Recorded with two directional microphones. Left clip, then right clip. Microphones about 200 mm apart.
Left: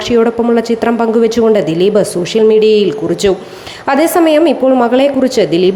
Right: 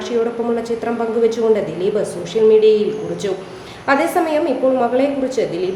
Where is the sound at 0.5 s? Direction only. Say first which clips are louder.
Left 8 dB; 40° left (ahead or behind).